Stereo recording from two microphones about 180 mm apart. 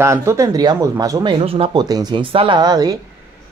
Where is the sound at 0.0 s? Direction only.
15° right (ahead or behind).